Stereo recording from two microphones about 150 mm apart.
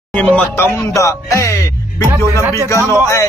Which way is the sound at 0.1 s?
10° left (ahead or behind).